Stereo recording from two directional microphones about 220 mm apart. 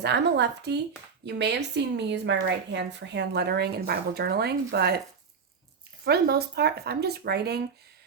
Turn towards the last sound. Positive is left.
turn(degrees=-45)  # may be behind; listen again after turning